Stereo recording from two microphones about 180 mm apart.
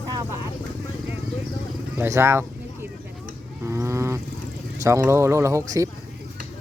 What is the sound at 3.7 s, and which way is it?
Vehicle, 15° right (ahead or behind).